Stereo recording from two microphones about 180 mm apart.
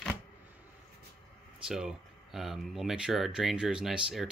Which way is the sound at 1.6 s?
5° right (ahead or behind).